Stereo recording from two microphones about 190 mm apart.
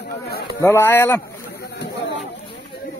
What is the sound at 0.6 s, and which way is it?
Speech, 15° left (ahead or behind).